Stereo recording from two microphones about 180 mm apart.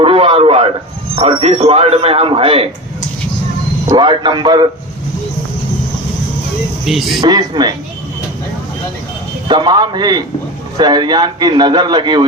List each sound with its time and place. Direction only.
0.0 s radio: 30° right (ahead or behind)
1.1 s a man's voice: 30° right (ahead or behind)
3.8 s a man's voice: 25° right (ahead or behind)
6.8 s speech: centre (ahead or behind)
7.2 s a man's voice: 25° right (ahead or behind)
9.5 s a man's voice: 25° right (ahead or behind)